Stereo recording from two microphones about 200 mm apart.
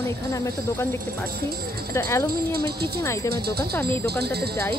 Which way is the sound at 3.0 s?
15° left (ahead or behind).